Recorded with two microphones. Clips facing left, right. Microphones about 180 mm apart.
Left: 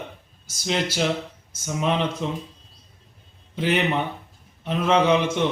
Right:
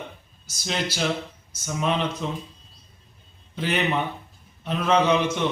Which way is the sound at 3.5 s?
20° left (ahead or behind).